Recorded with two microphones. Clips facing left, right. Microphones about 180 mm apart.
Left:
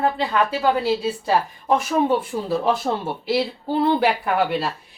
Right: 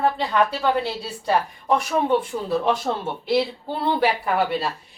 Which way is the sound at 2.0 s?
5° left (ahead or behind).